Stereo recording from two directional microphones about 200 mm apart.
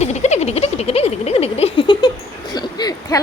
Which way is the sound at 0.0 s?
35° left (ahead or behind).